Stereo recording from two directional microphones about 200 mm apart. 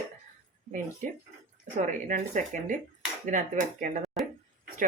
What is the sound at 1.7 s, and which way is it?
Speech, 40° right (ahead or behind).